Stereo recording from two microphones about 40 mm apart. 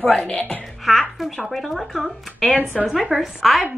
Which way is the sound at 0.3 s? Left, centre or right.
Left.